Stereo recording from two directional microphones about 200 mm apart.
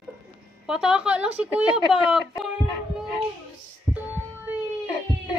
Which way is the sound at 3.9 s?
Centre (ahead or behind).